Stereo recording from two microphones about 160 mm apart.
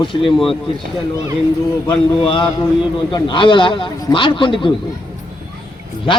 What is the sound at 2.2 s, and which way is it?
A man's voice, 35° left (ahead or behind).